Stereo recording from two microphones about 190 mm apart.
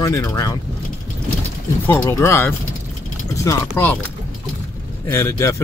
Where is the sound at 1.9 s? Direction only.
15° left (ahead or behind).